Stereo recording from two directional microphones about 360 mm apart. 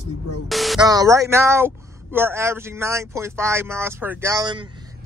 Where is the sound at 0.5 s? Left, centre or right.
Centre.